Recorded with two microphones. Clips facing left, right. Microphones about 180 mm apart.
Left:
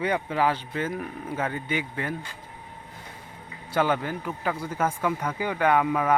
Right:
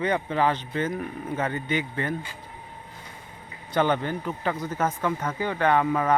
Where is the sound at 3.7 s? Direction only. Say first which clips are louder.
Right 1 dB; 5° left (ahead or behind).